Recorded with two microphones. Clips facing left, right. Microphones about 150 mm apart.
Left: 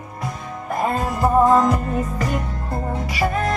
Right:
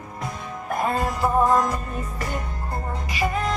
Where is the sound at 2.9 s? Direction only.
65° left (ahead or behind).